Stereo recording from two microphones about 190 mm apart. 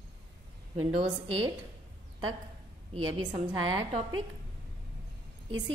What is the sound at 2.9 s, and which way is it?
Speech, 90° right.